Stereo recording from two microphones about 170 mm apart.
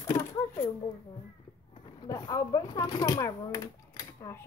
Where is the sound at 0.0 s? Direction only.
45° left (ahead or behind).